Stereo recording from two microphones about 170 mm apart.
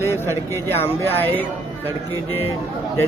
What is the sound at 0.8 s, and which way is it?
Speech, 15° left (ahead or behind).